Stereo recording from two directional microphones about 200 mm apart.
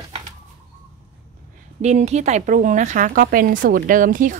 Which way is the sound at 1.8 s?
35° right (ahead or behind).